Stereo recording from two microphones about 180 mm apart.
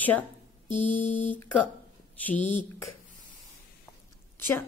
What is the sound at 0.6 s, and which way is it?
Music, 45° left (ahead or behind).